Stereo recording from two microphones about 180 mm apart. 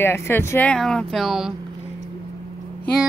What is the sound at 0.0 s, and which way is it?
A woman's voice, 15° left (ahead or behind).